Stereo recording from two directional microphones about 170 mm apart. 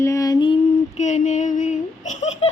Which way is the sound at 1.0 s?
45° left (ahead or behind).